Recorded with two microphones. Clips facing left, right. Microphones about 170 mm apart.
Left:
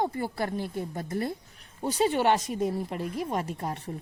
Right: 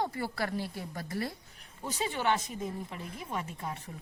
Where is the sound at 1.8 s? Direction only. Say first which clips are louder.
Left 9 dB; 40° left (ahead or behind).